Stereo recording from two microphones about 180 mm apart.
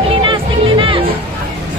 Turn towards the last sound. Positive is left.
turn(degrees=-25)  # may be behind; listen again after turning